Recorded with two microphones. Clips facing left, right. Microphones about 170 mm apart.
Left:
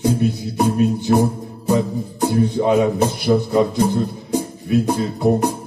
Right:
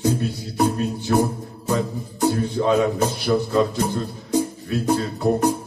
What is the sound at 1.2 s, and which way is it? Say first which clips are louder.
Speech: left 3 dB; 20° left (ahead or behind).